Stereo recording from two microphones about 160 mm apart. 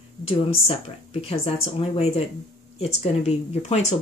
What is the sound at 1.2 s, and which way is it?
Speech, 40° left (ahead or behind).